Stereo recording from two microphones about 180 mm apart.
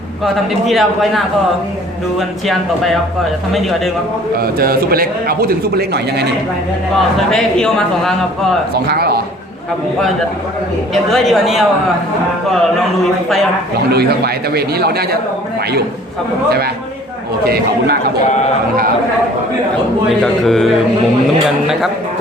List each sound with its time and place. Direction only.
0.7 s a man's voice: centre (ahead or behind)
4.4 s a man's voice: 55° right (ahead or behind)
7.2 s a man's voice: 5° left (ahead or behind)
8.7 s a man's voice: 60° right (ahead or behind)
10.9 s a man's voice: centre (ahead or behind)
13.9 s a man's voice: 60° right (ahead or behind)
17.4 s a man's voice: 60° right (ahead or behind)
20.1 s a man's voice: centre (ahead or behind)